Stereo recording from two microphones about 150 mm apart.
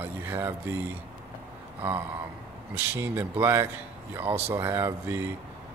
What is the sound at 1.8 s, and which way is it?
Speech, 10° right (ahead or behind).